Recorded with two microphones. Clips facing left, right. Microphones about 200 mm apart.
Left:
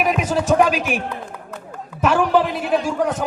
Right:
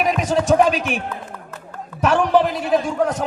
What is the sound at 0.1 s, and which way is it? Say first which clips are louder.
A man's voice: right 1 dB; 5° left (ahead or behind).